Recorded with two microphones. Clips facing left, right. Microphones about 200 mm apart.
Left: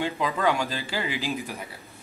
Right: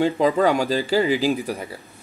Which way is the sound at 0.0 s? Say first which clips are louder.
Right 7 dB; 35° right (ahead or behind).